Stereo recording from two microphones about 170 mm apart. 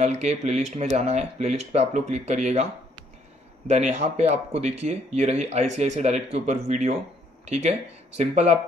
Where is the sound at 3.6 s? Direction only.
45° right (ahead or behind).